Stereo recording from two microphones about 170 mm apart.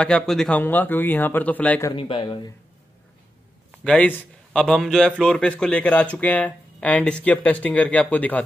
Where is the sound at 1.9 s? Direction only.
30° left (ahead or behind).